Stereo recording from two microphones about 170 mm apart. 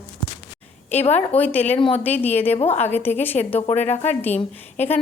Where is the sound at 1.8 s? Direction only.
30° left (ahead or behind).